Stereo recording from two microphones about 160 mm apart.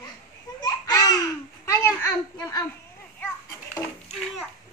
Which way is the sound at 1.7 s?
20° left (ahead or behind).